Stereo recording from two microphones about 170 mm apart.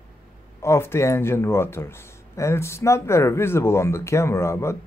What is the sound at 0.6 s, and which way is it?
Speech, 15° left (ahead or behind).